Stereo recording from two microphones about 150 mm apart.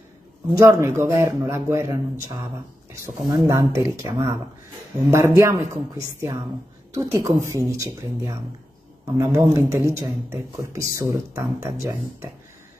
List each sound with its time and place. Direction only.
0.5 s a man's voice: 20° right (ahead or behind)
3.3 s a man's voice: 25° right (ahead or behind)